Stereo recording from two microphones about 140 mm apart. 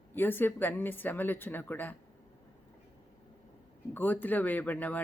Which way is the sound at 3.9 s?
15° left (ahead or behind).